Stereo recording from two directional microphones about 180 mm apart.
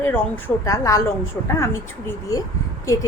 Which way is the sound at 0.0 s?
10° left (ahead or behind).